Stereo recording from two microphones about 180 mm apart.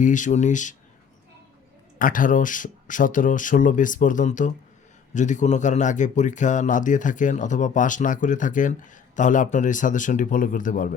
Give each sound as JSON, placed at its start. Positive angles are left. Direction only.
{"t": 0.0, "sound": "speech", "side_deg": 45}
{"t": 2.0, "sound": "speech", "side_deg": 50}